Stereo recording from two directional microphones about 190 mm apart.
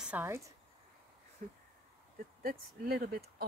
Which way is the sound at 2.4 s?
50° right (ahead or behind).